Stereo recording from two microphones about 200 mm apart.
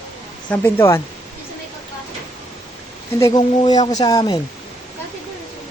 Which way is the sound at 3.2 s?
20° left (ahead or behind).